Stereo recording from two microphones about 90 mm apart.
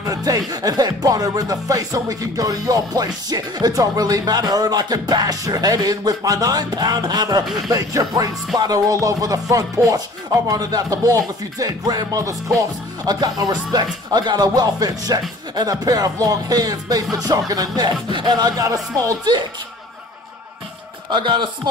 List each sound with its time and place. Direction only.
0.0 s speech: 40° right (ahead or behind)
21.1 s a man's voice: 60° right (ahead or behind)